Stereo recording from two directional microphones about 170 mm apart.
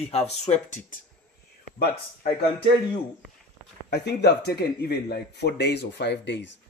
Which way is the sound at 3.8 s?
70° left (ahead or behind).